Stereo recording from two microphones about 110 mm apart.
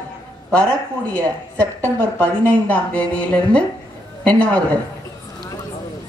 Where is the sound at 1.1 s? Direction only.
15° left (ahead or behind).